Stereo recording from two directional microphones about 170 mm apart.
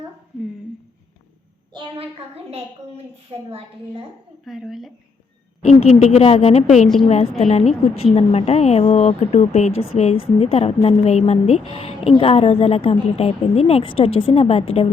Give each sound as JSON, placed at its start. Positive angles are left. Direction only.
{"t": 1.7, "sound": "a child's voice", "side_deg": -30}
{"t": 4.4, "sound": "speech", "side_deg": 0}
{"t": 5.8, "sound": "speech", "side_deg": 40}